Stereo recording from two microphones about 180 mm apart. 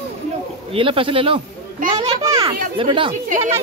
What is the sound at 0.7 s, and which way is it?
Speech, 30° right (ahead or behind).